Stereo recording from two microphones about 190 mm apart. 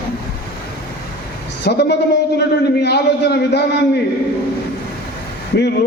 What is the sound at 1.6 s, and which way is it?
A man's voice, 60° left (ahead or behind).